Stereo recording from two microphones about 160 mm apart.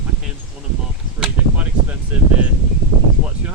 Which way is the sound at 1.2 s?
5° right (ahead or behind).